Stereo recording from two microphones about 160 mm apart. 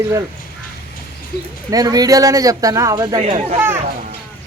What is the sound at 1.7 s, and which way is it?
Speech, 25° right (ahead or behind).